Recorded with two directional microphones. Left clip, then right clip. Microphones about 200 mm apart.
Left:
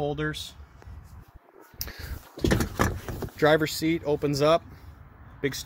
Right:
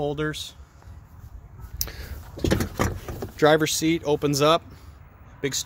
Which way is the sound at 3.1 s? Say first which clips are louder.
Right 3 dB; 20° right (ahead or behind).